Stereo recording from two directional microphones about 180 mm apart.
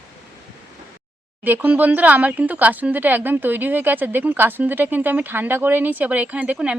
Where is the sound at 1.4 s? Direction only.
10° right (ahead or behind).